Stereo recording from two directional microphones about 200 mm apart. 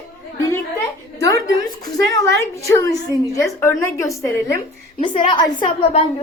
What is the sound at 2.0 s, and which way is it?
A woman's voice, 15° left (ahead or behind).